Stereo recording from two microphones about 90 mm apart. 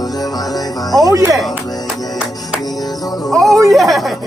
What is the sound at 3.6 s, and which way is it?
Speech, centre (ahead or behind).